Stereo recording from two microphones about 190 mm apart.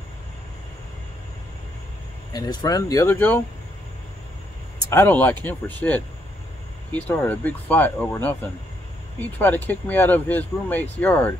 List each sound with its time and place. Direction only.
2.3 s speech: 20° left (ahead or behind)
4.7 s speech: 10° left (ahead or behind)